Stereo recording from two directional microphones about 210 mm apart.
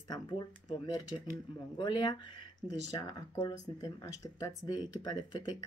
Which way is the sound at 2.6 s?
55° right (ahead or behind).